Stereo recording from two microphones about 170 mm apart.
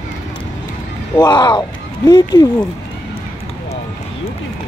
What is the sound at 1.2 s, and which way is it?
Speech, 25° left (ahead or behind).